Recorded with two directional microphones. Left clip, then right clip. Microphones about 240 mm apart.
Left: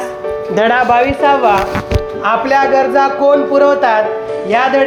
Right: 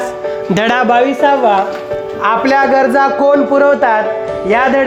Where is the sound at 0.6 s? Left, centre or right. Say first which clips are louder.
Left 1 dB; right.